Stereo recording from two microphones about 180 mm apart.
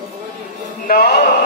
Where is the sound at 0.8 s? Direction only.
60° left (ahead or behind).